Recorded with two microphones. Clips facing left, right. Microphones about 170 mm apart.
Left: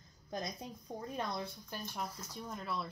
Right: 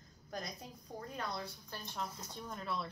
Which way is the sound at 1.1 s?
20° left (ahead or behind).